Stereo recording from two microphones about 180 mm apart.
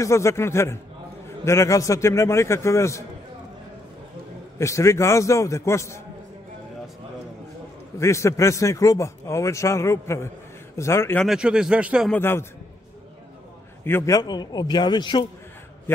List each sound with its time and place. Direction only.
0.0 s a man's voice: 15° left (ahead or behind)
4.6 s a man's voice: 15° left (ahead or behind)
8.0 s a man's voice: 15° left (ahead or behind)
11.2 s speech: 5° right (ahead or behind)
12.1 s a man's voice: 15° left (ahead or behind)
13.8 s a man's voice: 15° left (ahead or behind)